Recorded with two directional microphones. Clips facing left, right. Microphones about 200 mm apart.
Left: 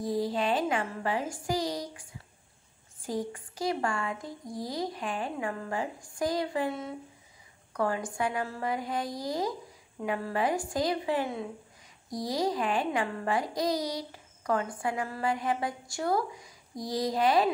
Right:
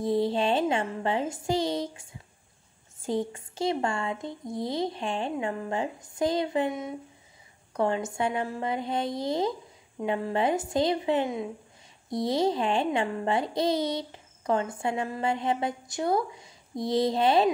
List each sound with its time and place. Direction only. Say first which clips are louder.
0.0 s a child's voice: right 4 dB; 25° right (ahead or behind)